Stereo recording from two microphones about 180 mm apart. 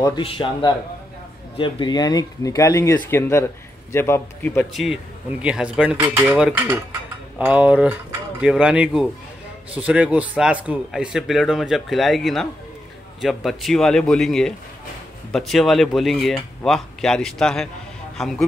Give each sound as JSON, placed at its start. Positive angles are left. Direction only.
{"t": 0.0, "sound": "a man's voice", "side_deg": 25}
{"t": 4.7, "sound": "speech", "side_deg": -5}